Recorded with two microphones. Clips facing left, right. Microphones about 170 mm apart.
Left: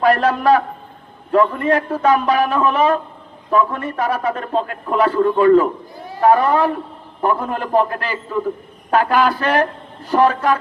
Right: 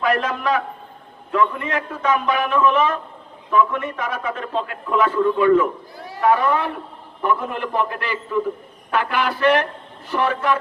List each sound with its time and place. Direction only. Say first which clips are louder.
0.0 s a man's voice: left 6 dB; 35° left (ahead or behind)